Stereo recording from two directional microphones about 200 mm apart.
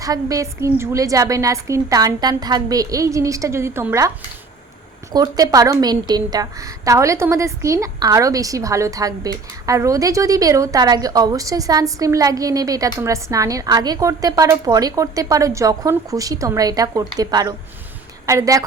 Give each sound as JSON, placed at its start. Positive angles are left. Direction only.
{"t": 0.0, "sound": "a woman's voice", "side_deg": -15}
{"t": 5.1, "sound": "a woman's voice", "side_deg": -20}